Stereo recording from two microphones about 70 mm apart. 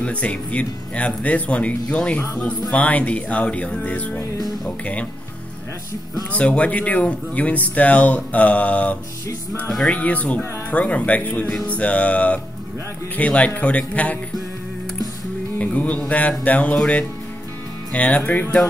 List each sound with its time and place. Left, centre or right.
0.0 s speech: centre
6.3 s speech: centre
15.6 s music: left
16.7 s speech: centre